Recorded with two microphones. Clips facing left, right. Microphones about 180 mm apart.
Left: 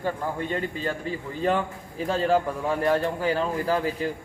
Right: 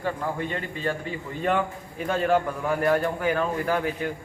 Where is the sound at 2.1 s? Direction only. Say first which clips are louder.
Even; 30° left (ahead or behind).